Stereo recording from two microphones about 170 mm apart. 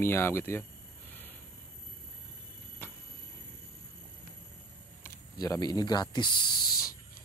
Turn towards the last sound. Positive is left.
turn(degrees=25)  # may be behind; listen again after turning